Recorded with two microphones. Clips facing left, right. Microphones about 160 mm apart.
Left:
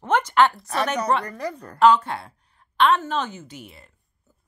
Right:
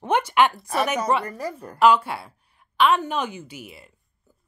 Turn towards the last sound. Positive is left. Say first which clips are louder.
# right 2 dB
turn(degrees=-10)  # may be behind; listen again after turning